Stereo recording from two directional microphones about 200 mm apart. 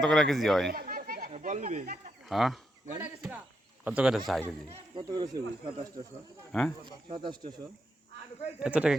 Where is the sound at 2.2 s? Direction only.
Centre (ahead or behind).